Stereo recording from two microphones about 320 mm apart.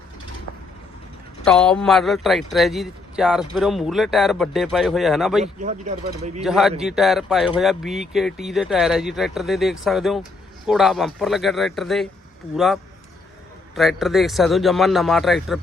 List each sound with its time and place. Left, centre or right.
1.5 s speech: centre
5.4 s speech: right
6.4 s speech: centre